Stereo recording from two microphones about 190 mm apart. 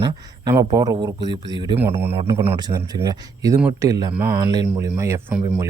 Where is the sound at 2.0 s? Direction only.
10° right (ahead or behind).